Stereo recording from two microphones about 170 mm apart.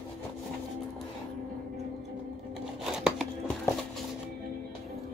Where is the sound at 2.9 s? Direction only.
5° right (ahead or behind).